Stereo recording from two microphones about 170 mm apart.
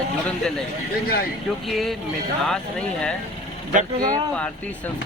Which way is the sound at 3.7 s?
50° right (ahead or behind).